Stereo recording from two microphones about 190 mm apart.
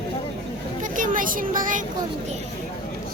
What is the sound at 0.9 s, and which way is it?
Speech, 45° right (ahead or behind).